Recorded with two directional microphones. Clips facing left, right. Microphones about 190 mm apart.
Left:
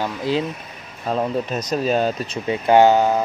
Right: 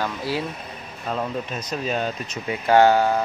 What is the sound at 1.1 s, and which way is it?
Speech, 40° left (ahead or behind).